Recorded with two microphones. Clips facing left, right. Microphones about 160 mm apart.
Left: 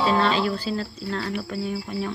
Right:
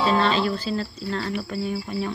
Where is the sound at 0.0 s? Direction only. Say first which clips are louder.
Even; 5° left (ahead or behind).